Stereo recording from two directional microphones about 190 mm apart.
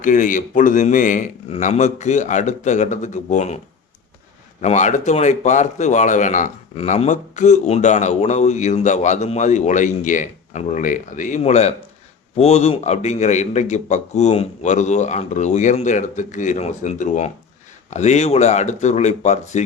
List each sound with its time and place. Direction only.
0.0 s speech: 40° left (ahead or behind)
4.6 s speech: 40° left (ahead or behind)